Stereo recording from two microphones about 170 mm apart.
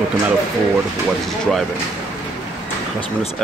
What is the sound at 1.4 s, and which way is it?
Speech, centre (ahead or behind).